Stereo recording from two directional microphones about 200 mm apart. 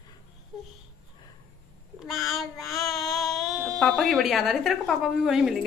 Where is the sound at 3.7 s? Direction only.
Centre (ahead or behind).